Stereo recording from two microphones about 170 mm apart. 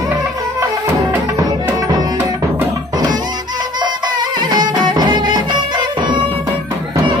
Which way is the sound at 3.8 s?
25° right (ahead or behind).